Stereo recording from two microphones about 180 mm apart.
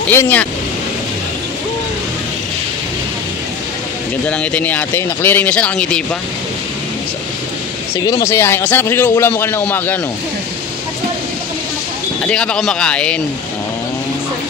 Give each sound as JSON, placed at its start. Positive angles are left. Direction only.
{"t": 0.1, "sound": "a man's voice", "side_deg": 10}
{"t": 4.3, "sound": "a man's voice", "side_deg": 5}
{"t": 8.0, "sound": "a man's voice", "side_deg": 20}
{"t": 12.3, "sound": "speech", "side_deg": 5}